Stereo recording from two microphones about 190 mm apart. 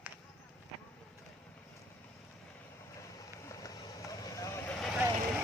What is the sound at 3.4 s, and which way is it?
Vehicle, 15° left (ahead or behind).